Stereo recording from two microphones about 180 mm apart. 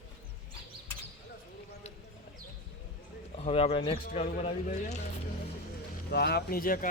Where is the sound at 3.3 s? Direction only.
35° left (ahead or behind).